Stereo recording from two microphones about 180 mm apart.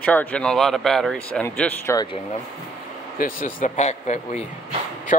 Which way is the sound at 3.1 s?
50° left (ahead or behind).